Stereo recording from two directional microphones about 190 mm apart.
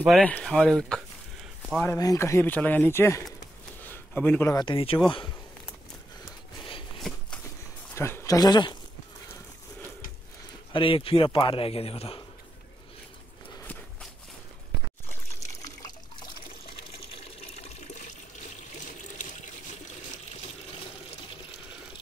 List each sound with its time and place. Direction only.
0.2 s speech: 5° left (ahead or behind)
2.0 s speech: 15° left (ahead or behind)
7.0 s a sound: 5° left (ahead or behind)
7.9 s speech: 15° left (ahead or behind)
10.7 s a man's voice: 30° left (ahead or behind)
15.6 s liquid: 20° left (ahead or behind)
17.6 s water: 40° left (ahead or behind)